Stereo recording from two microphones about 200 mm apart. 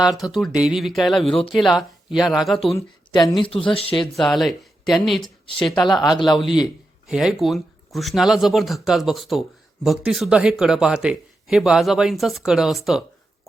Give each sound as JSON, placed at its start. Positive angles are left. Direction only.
{"t": 0.0, "sound": "speech", "side_deg": 0}
{"t": 2.7, "sound": "speech", "side_deg": 20}
{"t": 4.1, "sound": "speech", "side_deg": 0}
{"t": 6.0, "sound": "speech", "side_deg": 20}
{"t": 6.2, "sound": "speech", "side_deg": 0}